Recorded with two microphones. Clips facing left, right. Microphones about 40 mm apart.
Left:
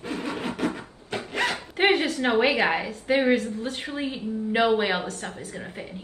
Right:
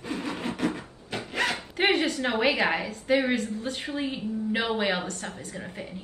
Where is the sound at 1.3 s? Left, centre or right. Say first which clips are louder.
Left 1 dB; centre.